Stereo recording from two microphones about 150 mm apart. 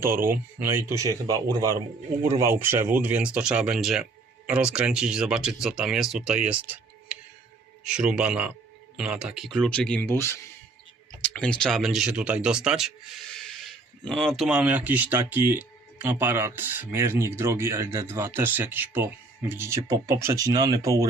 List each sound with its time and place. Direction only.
0.3 s speech: 15° right (ahead or behind)